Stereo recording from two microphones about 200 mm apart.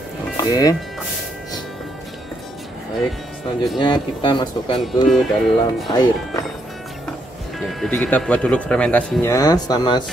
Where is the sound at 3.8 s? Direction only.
25° left (ahead or behind).